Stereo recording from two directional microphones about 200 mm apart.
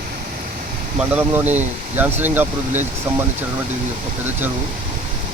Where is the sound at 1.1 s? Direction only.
10° right (ahead or behind).